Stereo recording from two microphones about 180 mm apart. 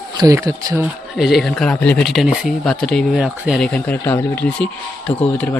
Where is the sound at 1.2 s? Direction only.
Centre (ahead or behind).